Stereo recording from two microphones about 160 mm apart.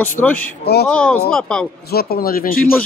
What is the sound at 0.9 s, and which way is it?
Speech, 10° left (ahead or behind).